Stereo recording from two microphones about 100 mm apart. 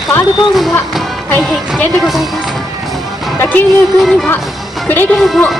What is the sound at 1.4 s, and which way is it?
Speech, centre (ahead or behind).